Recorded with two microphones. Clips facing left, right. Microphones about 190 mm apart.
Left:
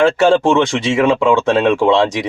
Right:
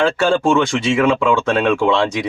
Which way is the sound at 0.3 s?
20° left (ahead or behind).